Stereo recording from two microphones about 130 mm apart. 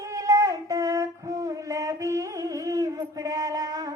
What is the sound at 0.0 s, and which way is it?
Music, 25° right (ahead or behind).